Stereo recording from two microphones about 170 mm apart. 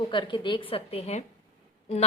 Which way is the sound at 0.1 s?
30° left (ahead or behind).